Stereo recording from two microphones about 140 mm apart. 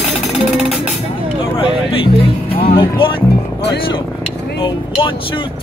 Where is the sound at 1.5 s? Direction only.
40° left (ahead or behind).